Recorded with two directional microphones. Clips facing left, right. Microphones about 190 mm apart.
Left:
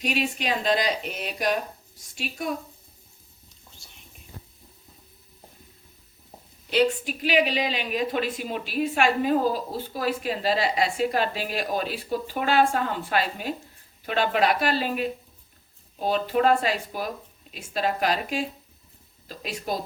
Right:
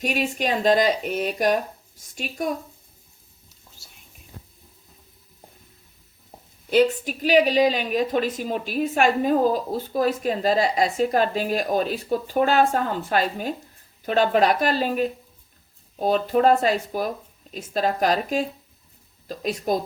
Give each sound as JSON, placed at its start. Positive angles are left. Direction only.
{"t": 0.0, "sound": "speech", "side_deg": -45}
{"t": 6.7, "sound": "speech", "side_deg": -45}